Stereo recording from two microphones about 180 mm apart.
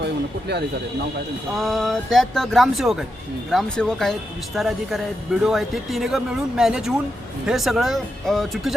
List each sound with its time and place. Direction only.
0.0 s speech: 65° right (ahead or behind)
1.5 s speech: centre (ahead or behind)